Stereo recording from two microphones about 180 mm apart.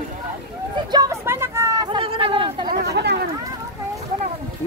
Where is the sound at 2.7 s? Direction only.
65° right (ahead or behind).